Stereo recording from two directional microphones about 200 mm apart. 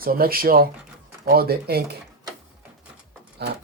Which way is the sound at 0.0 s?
50° right (ahead or behind).